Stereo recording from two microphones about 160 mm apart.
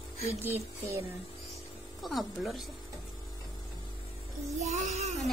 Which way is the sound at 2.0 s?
Centre (ahead or behind).